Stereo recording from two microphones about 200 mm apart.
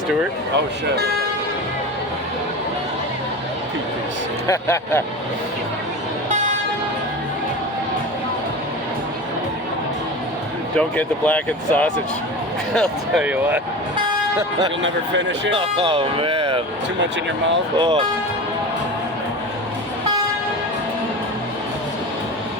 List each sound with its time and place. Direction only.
4.4 s speech: 15° left (ahead or behind)
10.8 s speech: 5° left (ahead or behind); by 13.6 s 10° right (ahead or behind)
14.8 s speech: 65° right (ahead or behind)
15.5 s speech: 30° right (ahead or behind)
17.7 s speech: 25° right (ahead or behind)